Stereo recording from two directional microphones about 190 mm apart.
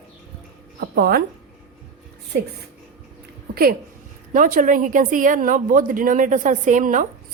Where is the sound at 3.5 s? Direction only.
55° right (ahead or behind).